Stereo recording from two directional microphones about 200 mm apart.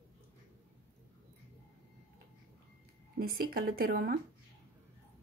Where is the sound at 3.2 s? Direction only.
50° right (ahead or behind).